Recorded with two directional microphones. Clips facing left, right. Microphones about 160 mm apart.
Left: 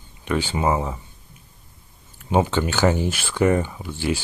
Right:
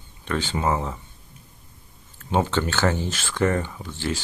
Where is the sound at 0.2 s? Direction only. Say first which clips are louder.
Left 3 dB; 10° left (ahead or behind).